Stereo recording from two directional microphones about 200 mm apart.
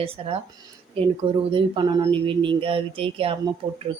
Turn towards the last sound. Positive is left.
turn(degrees=-20)  # may be behind; listen again after turning